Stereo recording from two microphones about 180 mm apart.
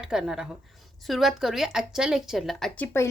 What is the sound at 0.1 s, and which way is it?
A woman's voice, 5° right (ahead or behind).